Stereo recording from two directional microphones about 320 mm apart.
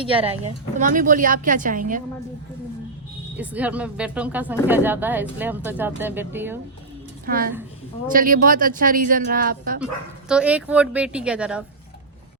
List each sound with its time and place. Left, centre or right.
0.0 s speech: centre
3.3 s speech: centre
7.3 s speech: right
9.8 s speech: centre